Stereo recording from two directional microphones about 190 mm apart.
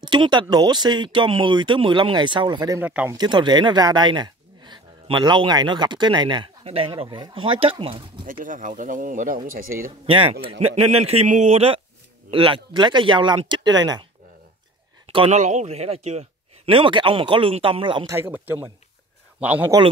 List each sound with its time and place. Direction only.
0.0 s speech: 25° right (ahead or behind)
2.8 s speech: 10° right (ahead or behind)
3.2 s speech: 25° right (ahead or behind)
8.3 s speech: 45° right (ahead or behind)
10.0 s speech: 30° right (ahead or behind)
15.1 s speech: 35° right (ahead or behind)
18.1 s speech: 10° right (ahead or behind)
19.7 s speech: 20° right (ahead or behind)